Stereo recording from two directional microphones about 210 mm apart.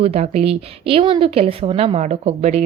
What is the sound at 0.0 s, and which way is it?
A woman's voice, 30° right (ahead or behind).